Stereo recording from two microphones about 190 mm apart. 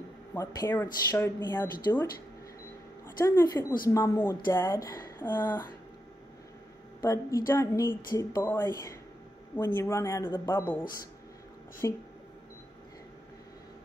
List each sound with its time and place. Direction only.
0.3 s a woman's voice: 15° left (ahead or behind)
3.3 s a woman's voice: 15° left (ahead or behind)
7.0 s a woman's voice: 15° left (ahead or behind)
11.8 s a woman's voice: 15° left (ahead or behind)